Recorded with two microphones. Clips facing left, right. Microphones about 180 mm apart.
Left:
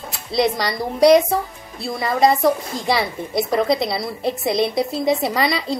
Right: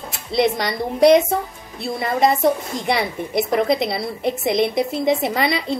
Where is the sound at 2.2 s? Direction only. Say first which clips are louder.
Left 1 dB; 25° right (ahead or behind).